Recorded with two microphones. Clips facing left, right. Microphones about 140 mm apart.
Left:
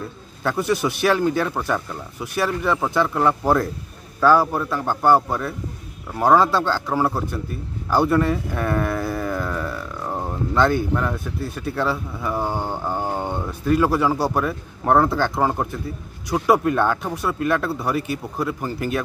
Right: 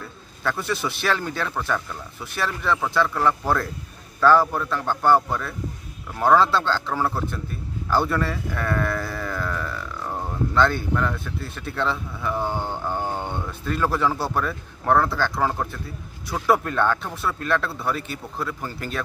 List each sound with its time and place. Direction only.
0.4 s speech: 15° left (ahead or behind)